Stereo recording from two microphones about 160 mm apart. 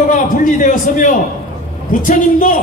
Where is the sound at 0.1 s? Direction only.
55° left (ahead or behind).